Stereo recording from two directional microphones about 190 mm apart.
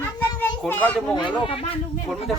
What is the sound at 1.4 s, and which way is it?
Speech, 30° left (ahead or behind).